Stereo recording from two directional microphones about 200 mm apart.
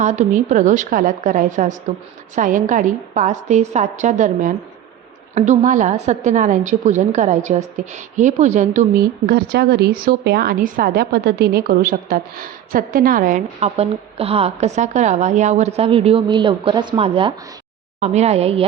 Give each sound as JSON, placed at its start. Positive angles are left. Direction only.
{"t": 0.0, "sound": "a woman's voice", "side_deg": -35}